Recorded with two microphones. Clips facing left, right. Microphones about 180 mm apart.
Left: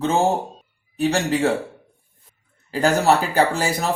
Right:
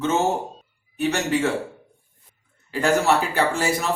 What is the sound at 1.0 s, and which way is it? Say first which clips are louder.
Speech: left 2 dB; 35° left (ahead or behind).